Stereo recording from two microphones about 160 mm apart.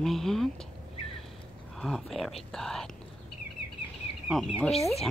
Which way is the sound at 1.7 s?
Centre (ahead or behind).